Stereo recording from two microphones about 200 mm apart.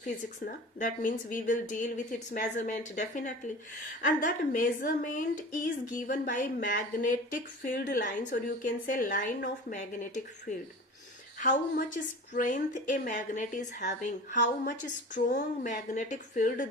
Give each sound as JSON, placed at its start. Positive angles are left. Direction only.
{"t": 0.0, "sound": "a woman's voice", "side_deg": 40}
{"t": 12.3, "sound": "speech", "side_deg": 40}
{"t": 14.3, "sound": "speech", "side_deg": 60}
{"t": 14.7, "sound": "speech", "side_deg": 40}